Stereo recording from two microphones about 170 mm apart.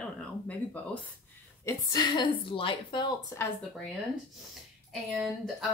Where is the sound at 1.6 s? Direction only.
20° left (ahead or behind).